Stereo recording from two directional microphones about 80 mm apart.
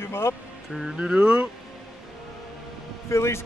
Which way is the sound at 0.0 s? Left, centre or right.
Left.